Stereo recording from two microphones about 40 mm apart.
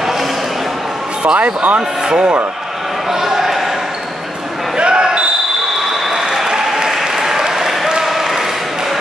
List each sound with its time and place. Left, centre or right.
1.2 s speech: right
2.0 s a man's voice: right
3.1 s basketball bounce: centre
4.7 s basketball bounce: right
6.0 s applause: centre